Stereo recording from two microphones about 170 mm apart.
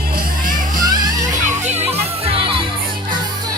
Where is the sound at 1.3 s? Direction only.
45° right (ahead or behind).